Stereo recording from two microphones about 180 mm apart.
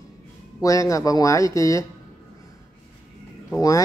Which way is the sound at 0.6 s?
20° left (ahead or behind).